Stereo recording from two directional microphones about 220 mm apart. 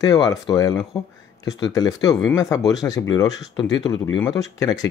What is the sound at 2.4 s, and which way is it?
Speech, 15° left (ahead or behind).